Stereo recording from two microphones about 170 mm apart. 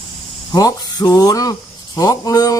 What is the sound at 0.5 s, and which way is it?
Speech, 20° left (ahead or behind).